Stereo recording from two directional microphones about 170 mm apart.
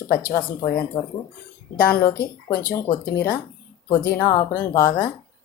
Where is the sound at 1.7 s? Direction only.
60° left (ahead or behind).